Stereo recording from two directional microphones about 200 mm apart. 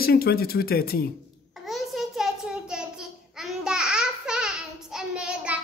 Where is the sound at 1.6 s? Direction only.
Centre (ahead or behind).